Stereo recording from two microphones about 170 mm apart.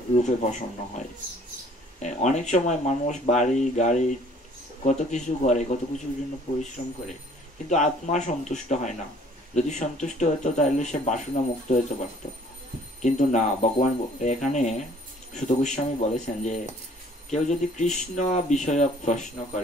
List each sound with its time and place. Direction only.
0.1 s speech: 45° left (ahead or behind)
6.8 s speech: 40° left (ahead or behind)
13.0 s speech: 45° left (ahead or behind)